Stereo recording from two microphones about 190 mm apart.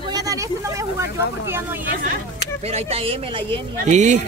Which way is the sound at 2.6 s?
35° right (ahead or behind).